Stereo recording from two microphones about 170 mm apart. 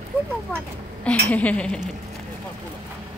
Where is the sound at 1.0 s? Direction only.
5° left (ahead or behind).